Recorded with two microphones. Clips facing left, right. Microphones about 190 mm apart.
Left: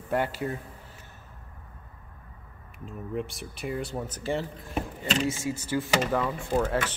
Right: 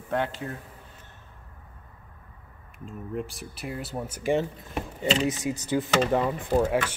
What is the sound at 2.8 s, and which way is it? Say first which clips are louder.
Speech: even; centre (ahead or behind).